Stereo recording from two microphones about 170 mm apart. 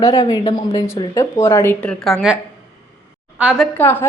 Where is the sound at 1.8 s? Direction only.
5° left (ahead or behind).